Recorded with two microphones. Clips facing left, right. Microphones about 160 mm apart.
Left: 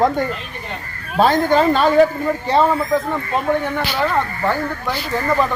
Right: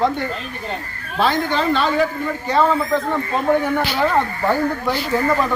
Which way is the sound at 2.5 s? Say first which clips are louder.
Left 1 dB; 30° left (ahead or behind).